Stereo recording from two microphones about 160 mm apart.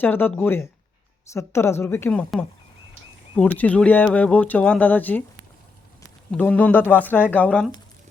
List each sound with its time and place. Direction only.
0.0 s speech: 10° left (ahead or behind)
3.3 s speech: 10° left (ahead or behind)
6.3 s speech: 10° left (ahead or behind)